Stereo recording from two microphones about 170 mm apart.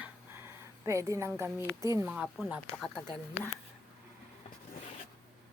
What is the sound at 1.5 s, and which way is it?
Speech, 15° right (ahead or behind).